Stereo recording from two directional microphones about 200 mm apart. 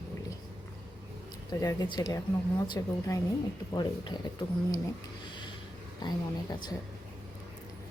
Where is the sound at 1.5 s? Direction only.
20° left (ahead or behind).